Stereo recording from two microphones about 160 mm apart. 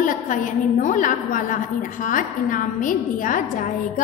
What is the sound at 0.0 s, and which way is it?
A woman's voice, 50° left (ahead or behind).